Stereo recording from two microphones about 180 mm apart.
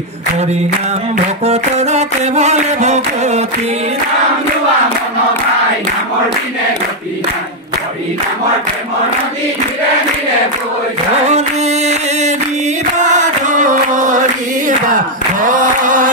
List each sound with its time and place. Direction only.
1.4 s music: 40° right (ahead or behind)
11.2 s music: 35° right (ahead or behind)
12.9 s chant: 40° right (ahead or behind)
15.4 s a sound: 45° right (ahead or behind)